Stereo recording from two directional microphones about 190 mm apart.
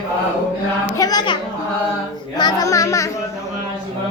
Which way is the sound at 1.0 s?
20° left (ahead or behind).